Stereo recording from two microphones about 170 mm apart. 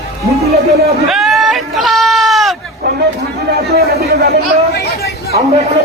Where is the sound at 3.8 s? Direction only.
70° right (ahead or behind).